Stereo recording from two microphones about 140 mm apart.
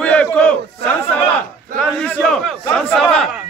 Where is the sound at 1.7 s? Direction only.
5° left (ahead or behind).